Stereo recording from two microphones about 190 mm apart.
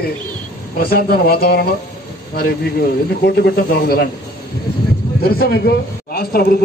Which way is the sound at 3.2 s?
55° left (ahead or behind).